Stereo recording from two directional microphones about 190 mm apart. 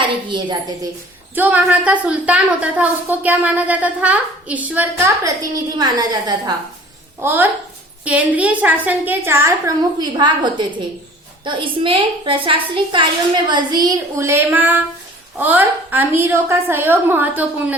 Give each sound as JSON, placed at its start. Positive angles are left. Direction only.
{"t": 0.3, "sound": "a woman's voice", "side_deg": -25}
{"t": 1.4, "sound": "a woman's voice", "side_deg": -10}
{"t": 7.2, "sound": "a woman's voice", "side_deg": -10}